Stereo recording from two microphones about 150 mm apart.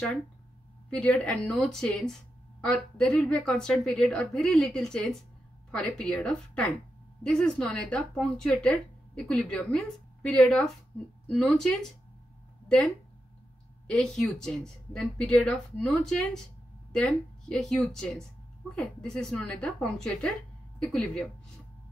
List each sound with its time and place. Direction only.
0.8 s a woman's voice: 5° left (ahead or behind)